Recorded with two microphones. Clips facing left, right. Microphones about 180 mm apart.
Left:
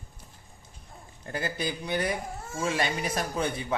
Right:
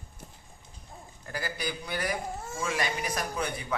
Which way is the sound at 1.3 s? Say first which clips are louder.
Left 3 dB; 25° left (ahead or behind).